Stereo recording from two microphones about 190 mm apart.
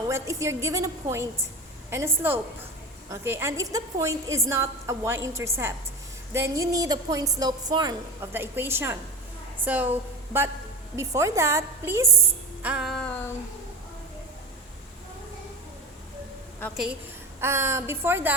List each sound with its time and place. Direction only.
0.1 s a woman's voice: 15° right (ahead or behind)
1.9 s a woman's voice: 10° right (ahead or behind)
12.6 s music: 5° right (ahead or behind)
16.7 s a woman's voice: 5° right (ahead or behind)
17.4 s a woman's voice: 15° right (ahead or behind)